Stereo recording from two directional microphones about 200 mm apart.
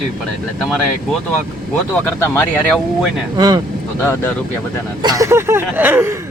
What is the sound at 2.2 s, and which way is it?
Speech, 10° left (ahead or behind).